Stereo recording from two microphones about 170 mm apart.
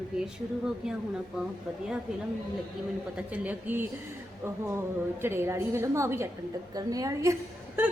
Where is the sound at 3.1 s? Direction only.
10° right (ahead or behind).